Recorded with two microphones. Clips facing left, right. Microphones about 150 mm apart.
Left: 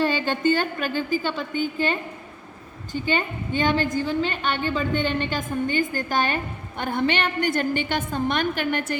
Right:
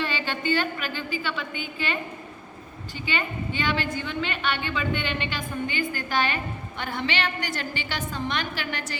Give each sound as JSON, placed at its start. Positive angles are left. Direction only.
{"t": 0.0, "sound": "a woman's voice", "side_deg": 45}